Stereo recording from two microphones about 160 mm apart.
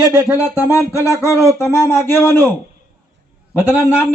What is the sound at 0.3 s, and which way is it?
Speech, 15° left (ahead or behind).